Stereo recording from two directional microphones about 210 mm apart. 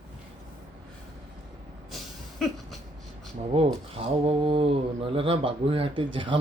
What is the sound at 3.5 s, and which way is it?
Mantra, 25° right (ahead or behind).